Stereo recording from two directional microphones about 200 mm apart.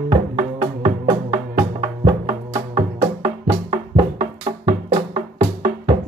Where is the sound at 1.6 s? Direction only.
25° right (ahead or behind).